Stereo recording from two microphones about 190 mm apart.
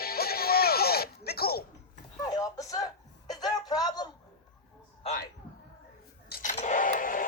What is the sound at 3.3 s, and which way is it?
Music, 20° left (ahead or behind).